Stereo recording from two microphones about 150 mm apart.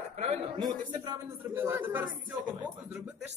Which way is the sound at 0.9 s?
25° right (ahead or behind).